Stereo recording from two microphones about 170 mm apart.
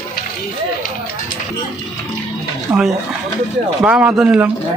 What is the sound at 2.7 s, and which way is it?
Speech, 10° right (ahead or behind).